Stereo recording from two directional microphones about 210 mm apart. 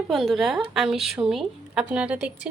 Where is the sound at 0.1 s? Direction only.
Centre (ahead or behind).